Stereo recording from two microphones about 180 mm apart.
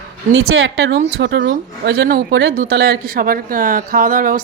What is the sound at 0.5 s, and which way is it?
A woman's voice, 85° right.